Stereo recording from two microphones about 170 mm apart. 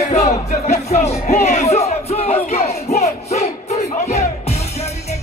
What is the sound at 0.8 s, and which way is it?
Crowd, 40° left (ahead or behind).